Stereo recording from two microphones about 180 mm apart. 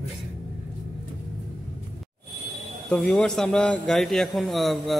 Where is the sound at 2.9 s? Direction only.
5° left (ahead or behind).